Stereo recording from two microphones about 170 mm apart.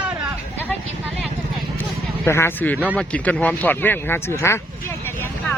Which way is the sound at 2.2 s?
15° left (ahead or behind).